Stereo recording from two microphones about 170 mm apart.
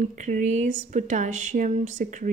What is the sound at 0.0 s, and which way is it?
A woman's voice, 45° right (ahead or behind).